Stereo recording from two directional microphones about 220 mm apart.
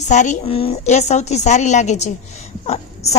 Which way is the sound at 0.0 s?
35° left (ahead or behind).